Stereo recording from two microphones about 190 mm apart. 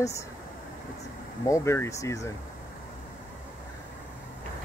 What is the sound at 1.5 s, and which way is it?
Speech, 15° left (ahead or behind).